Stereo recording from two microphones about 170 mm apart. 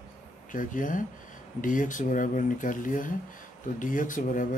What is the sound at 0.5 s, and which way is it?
Speech, 50° left (ahead or behind).